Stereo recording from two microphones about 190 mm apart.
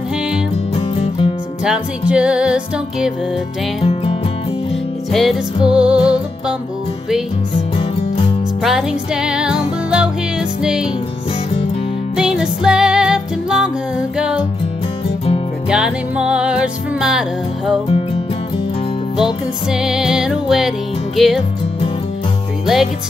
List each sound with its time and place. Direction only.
0.7 s music: 30° left (ahead or behind)
1.6 s music: 5° right (ahead or behind)
3.8 s music: 30° left (ahead or behind)
5.1 s music: centre (ahead or behind)
8.6 s music: 5° right (ahead or behind)
12.2 s music: 5° right (ahead or behind)
15.7 s music: 5° right (ahead or behind)
19.1 s music: 5° right (ahead or behind)